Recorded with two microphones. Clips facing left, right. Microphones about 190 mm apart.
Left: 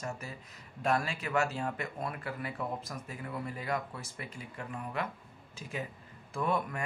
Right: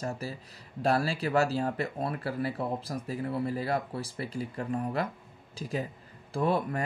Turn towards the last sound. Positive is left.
turn(degrees=-35)  # may be behind; listen again after turning